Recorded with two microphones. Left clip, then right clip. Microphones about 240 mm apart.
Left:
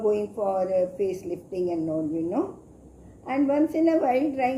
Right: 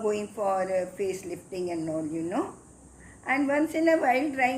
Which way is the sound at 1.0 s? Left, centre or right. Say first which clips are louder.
Left 3 dB; centre.